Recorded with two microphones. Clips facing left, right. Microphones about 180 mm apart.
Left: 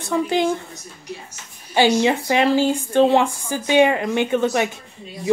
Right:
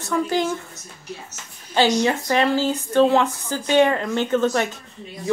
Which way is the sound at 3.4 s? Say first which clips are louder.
Left 1 dB; 15° left (ahead or behind).